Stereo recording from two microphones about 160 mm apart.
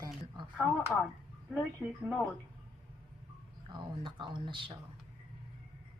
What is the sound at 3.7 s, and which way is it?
Speech, 30° right (ahead or behind).